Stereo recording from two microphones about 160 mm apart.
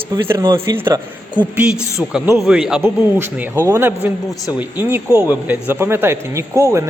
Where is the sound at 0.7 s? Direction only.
15° right (ahead or behind).